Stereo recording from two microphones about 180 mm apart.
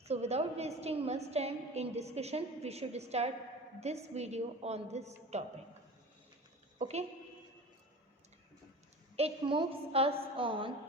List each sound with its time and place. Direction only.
0.0 s a woman's voice: 35° right (ahead or behind)
6.7 s a woman's voice: 40° right (ahead or behind)
9.1 s a woman's voice: 30° right (ahead or behind)